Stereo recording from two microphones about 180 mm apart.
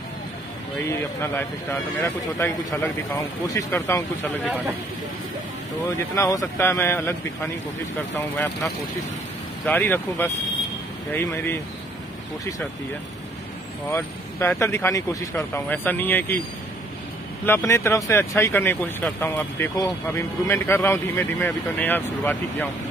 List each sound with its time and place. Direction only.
0.9 s speech: 15° left (ahead or behind)
6.1 s speech: 20° left (ahead or behind)
9.7 s speech: 10° left (ahead or behind)
13.8 s speech: 10° left (ahead or behind)
17.5 s speech: 15° left (ahead or behind)